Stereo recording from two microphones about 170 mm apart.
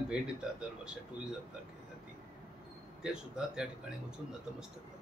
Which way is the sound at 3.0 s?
5° right (ahead or behind).